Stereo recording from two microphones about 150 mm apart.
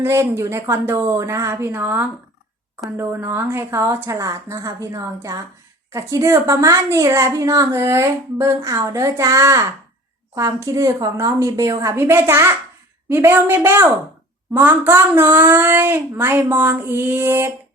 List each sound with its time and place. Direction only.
0.0 s a woman's voice: 20° right (ahead or behind)